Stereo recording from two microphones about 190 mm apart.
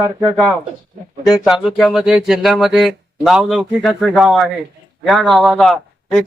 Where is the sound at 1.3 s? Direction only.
Centre (ahead or behind).